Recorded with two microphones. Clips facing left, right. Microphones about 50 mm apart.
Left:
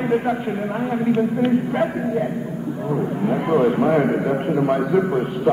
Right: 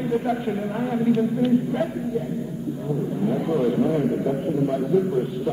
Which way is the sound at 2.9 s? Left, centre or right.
Left.